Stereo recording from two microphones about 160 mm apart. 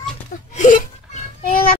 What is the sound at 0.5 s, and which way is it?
Whimper, 50° left (ahead or behind).